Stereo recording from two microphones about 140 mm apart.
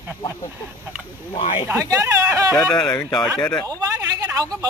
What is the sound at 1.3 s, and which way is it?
Speech, 40° left (ahead or behind).